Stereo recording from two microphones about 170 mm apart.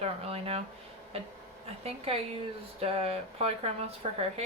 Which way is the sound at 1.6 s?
35° right (ahead or behind).